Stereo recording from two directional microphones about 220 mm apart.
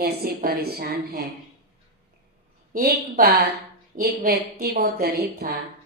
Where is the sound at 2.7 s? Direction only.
45° right (ahead or behind).